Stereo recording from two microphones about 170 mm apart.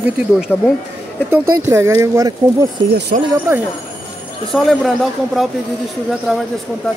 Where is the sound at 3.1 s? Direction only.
55° right (ahead or behind).